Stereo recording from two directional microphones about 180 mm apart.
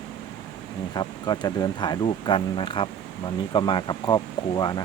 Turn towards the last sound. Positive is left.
turn(degrees=20)  # may be behind; listen again after turning